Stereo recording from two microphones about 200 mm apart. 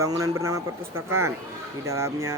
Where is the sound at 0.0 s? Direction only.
15° right (ahead or behind).